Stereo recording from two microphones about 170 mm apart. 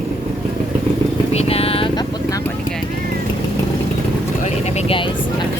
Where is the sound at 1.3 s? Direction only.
35° left (ahead or behind).